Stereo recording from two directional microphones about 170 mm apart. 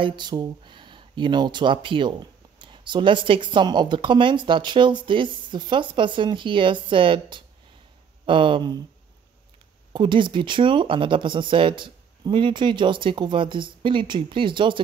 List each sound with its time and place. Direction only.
0.0 s speech: 25° right (ahead or behind)
9.9 s speech: 30° right (ahead or behind)